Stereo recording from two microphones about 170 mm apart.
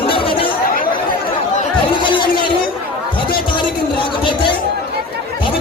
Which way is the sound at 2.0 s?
30° left (ahead or behind).